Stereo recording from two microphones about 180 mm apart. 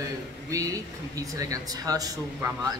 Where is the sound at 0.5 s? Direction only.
20° right (ahead or behind).